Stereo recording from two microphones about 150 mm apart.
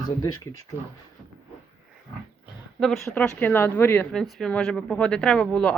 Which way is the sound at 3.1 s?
5° left (ahead or behind).